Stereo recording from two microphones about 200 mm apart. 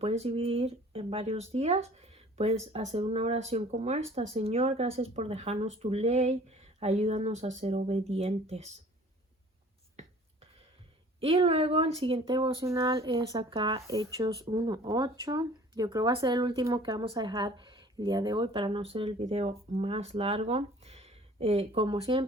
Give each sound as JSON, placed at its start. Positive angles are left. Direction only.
{"t": 0.0, "sound": "speech", "side_deg": -30}
{"t": 10.0, "sound": "a sound", "side_deg": -35}
{"t": 11.2, "sound": "speech", "side_deg": -30}